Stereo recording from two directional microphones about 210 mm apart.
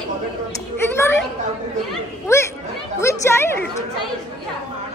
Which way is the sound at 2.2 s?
10° left (ahead or behind).